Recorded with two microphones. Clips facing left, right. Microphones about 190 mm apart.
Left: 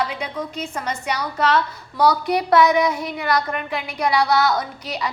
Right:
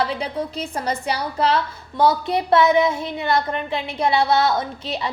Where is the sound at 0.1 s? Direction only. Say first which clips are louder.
Right 3 dB; 35° right (ahead or behind).